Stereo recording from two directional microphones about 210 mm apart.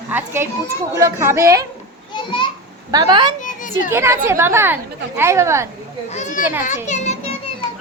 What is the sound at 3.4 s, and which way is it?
Children playing, 40° left (ahead or behind).